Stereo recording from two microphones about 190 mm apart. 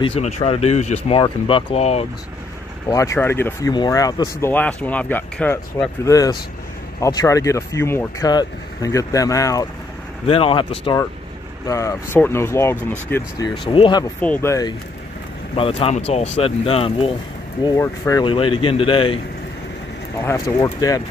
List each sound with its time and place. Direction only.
0.0 s speech: 35° left (ahead or behind)
2.9 s speech: 15° left (ahead or behind)
4.4 s speech: 10° left (ahead or behind)
10.2 s speech: 30° left (ahead or behind)
14.2 s speech: 10° left (ahead or behind)
15.5 s speech: 30° left (ahead or behind)
17.6 s speech: 15° left (ahead or behind)
18.2 s speech: 25° left (ahead or behind)
20.2 s speech: 15° left (ahead or behind)